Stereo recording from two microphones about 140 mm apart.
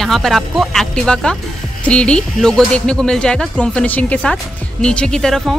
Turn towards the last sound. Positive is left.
turn(degrees=5)  # may be behind; listen again after turning